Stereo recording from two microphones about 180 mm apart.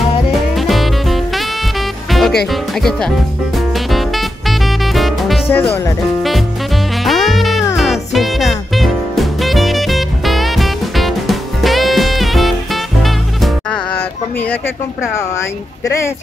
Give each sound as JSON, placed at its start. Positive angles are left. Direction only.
{"t": 0.6, "sound": "music", "side_deg": 0}
{"t": 2.5, "sound": "speech", "side_deg": 0}
{"t": 3.5, "sound": "music", "side_deg": 0}
{"t": 5.5, "sound": "speech", "side_deg": 10}
{"t": 7.1, "sound": "music", "side_deg": 0}
{"t": 13.9, "sound": "a sound", "side_deg": 10}
{"t": 15.1, "sound": "speech", "side_deg": 15}